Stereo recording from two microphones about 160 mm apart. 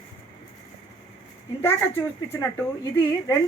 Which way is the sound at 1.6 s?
15° left (ahead or behind).